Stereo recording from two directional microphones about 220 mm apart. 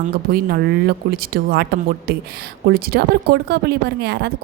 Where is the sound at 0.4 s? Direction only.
45° right (ahead or behind).